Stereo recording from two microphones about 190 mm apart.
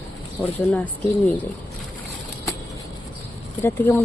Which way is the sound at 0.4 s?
5° left (ahead or behind).